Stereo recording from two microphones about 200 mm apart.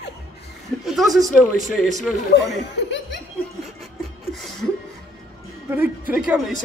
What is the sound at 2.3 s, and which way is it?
Chuckle, 60° left (ahead or behind).